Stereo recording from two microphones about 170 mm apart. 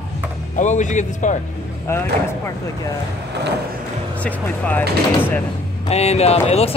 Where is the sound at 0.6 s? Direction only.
45° left (ahead or behind).